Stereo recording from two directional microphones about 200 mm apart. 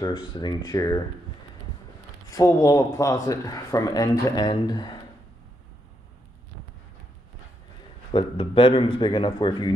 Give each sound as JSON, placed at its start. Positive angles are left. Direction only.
{"t": 0.0, "sound": "a man's voice", "side_deg": 20}
{"t": 2.3, "sound": "speech", "side_deg": 15}
{"t": 8.1, "sound": "a man's voice", "side_deg": 25}